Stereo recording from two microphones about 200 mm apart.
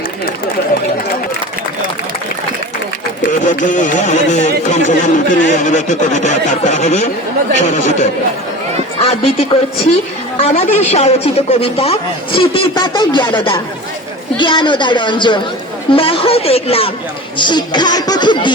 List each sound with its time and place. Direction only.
3.2 s speech: 40° left (ahead or behind); by 18.5 s 20° left (ahead or behind)